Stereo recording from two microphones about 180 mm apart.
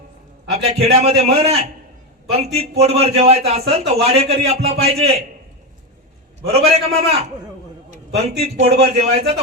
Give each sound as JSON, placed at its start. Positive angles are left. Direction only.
{"t": 0.7, "sound": "a man's voice", "side_deg": -35}
{"t": 6.4, "sound": "a man's voice", "side_deg": -35}